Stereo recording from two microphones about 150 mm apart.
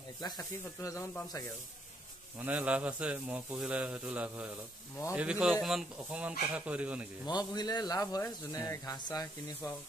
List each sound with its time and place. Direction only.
0.2 s speech: 25° left (ahead or behind)
2.3 s a man's voice: 10° right (ahead or behind)
7.2 s speech: 25° left (ahead or behind)